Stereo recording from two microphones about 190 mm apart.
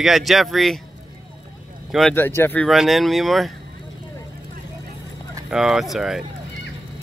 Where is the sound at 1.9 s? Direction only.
5° left (ahead or behind).